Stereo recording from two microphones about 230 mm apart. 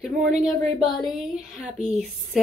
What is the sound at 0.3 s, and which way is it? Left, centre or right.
Speech, right.